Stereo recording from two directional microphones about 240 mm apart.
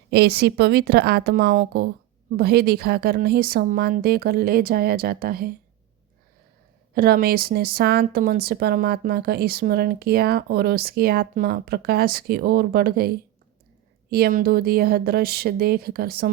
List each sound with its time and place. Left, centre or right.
0.1 s a woman's voice: right
6.9 s a woman's voice: right